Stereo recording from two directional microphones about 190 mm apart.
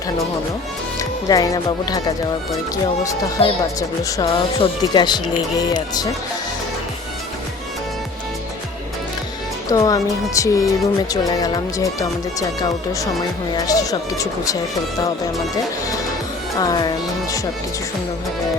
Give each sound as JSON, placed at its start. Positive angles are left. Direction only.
{"t": 0.9, "sound": "speech", "side_deg": 20}
{"t": 9.6, "sound": "speech", "side_deg": 20}
{"t": 13.6, "sound": "speech", "side_deg": 20}
{"t": 16.6, "sound": "speech", "side_deg": 20}